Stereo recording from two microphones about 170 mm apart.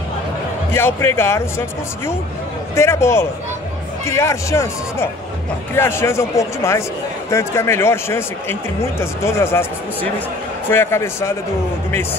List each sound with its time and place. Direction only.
0.7 s speech: 15° left (ahead or behind)
2.7 s speech: 15° left (ahead or behind)
10.7 s speech: 15° left (ahead or behind)